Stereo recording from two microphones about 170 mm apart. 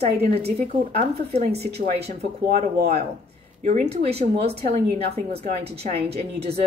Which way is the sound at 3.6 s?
45° right (ahead or behind).